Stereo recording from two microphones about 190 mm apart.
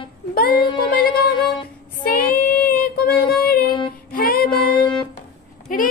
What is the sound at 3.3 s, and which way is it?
Child singing, 55° left (ahead or behind).